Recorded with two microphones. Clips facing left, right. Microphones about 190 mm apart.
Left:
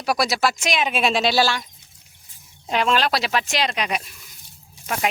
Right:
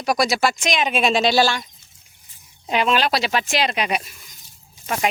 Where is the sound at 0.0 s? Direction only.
5° left (ahead or behind).